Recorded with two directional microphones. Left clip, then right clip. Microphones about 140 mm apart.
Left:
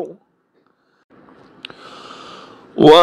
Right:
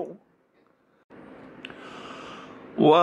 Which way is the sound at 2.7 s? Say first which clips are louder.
Left 10 dB; 35° left (ahead or behind).